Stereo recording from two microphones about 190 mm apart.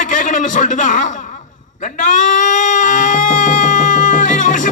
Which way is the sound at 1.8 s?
40° left (ahead or behind).